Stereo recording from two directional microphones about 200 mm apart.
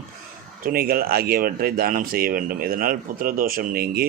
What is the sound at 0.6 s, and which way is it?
Speech, 50° right (ahead or behind).